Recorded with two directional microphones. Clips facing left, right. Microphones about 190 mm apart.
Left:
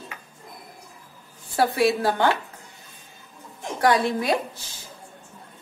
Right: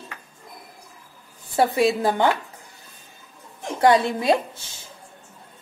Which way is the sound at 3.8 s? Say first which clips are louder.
Right 3 dB; 25° right (ahead or behind).